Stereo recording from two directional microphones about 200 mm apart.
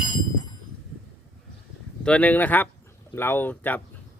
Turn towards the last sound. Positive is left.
turn(degrees=10)  # may be behind; listen again after turning